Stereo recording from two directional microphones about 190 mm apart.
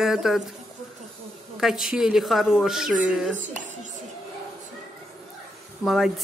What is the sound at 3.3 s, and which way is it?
Dishes, 40° right (ahead or behind).